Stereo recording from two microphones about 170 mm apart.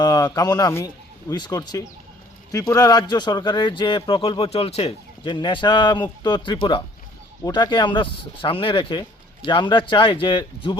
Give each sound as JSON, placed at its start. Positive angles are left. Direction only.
{"t": 0.0, "sound": "a man's voice", "side_deg": 20}